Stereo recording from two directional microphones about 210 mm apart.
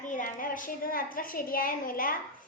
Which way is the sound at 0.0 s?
40° left (ahead or behind).